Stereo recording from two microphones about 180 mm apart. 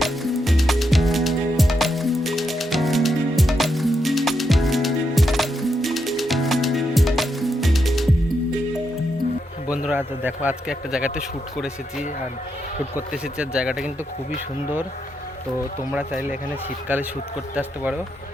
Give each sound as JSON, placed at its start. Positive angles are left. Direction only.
{"t": 0.0, "sound": "music", "side_deg": 0}
{"t": 9.6, "sound": "a man's voice", "side_deg": -5}
{"t": 13.4, "sound": "speech", "side_deg": -5}
{"t": 16.9, "sound": "speech", "side_deg": -10}